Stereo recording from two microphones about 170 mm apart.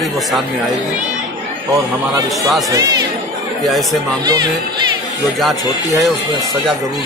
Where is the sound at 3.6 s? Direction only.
Centre (ahead or behind).